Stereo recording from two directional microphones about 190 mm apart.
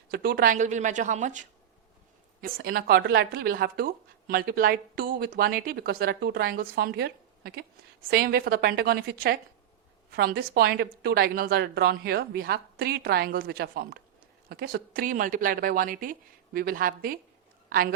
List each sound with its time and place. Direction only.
0.1 s speech: 55° right (ahead or behind)
2.4 s a woman's voice: 50° right (ahead or behind)